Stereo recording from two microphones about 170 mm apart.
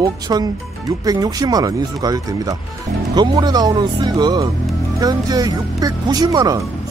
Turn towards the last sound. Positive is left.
turn(degrees=-20)  # may be behind; listen again after turning